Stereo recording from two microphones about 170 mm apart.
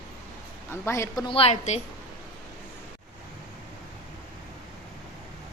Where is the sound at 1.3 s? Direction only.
35° left (ahead or behind).